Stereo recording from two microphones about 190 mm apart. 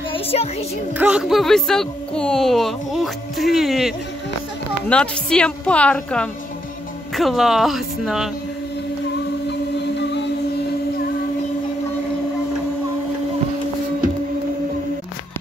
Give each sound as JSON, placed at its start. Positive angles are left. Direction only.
{"t": 0.1, "sound": "music", "side_deg": 30}
{"t": 0.9, "sound": "speech", "side_deg": -5}
{"t": 9.5, "sound": "a sound", "side_deg": 65}